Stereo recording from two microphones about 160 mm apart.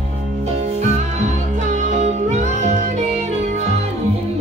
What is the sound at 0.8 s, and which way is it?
Music, 45° right (ahead or behind).